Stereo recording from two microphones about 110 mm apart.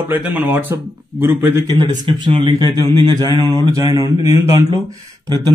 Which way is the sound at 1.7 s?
45° right (ahead or behind).